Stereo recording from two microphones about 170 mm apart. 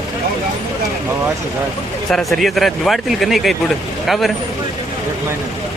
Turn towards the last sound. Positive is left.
turn(degrees=0)  # may be behind; listen again after turning